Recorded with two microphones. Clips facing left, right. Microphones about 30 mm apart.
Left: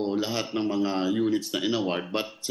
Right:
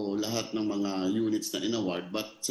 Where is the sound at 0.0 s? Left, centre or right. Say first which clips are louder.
Left 4 dB; left.